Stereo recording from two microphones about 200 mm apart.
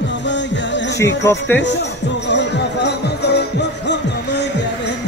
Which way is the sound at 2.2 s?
60° left (ahead or behind).